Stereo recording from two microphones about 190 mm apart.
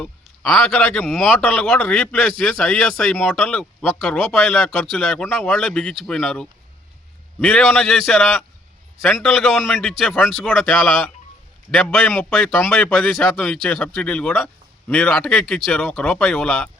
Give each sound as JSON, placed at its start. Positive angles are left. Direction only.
{"t": 0.0, "sound": "a man's voice", "side_deg": 0}